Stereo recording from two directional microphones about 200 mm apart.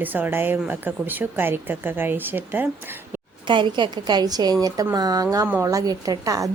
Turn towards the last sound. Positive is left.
turn(degrees=-15)  # may be behind; listen again after turning